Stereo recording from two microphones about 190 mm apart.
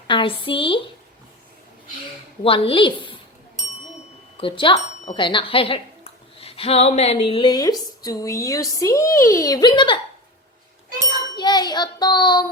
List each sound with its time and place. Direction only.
0.1 s a woman's voice: 25° left (ahead or behind)
2.4 s a woman's voice: 30° left (ahead or behind)
4.4 s a woman's voice: 25° left (ahead or behind)
11.3 s a woman's voice: 20° left (ahead or behind)